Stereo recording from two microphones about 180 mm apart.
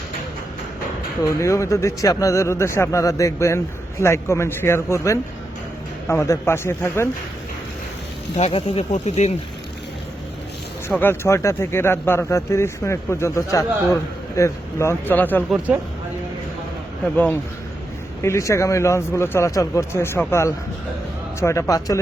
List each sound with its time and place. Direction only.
1.3 s speech: 15° left (ahead or behind)
8.4 s speech: 35° left (ahead or behind)
11.0 s speech: 15° left (ahead or behind)
15.4 s speech: 10° right (ahead or behind)
17.2 s speech: 10° left (ahead or behind)